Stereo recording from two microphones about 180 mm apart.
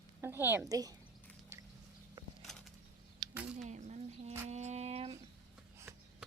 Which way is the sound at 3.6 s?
40° right (ahead or behind).